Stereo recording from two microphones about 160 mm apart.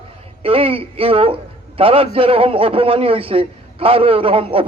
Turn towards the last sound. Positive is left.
turn(degrees=-35)  # may be behind; listen again after turning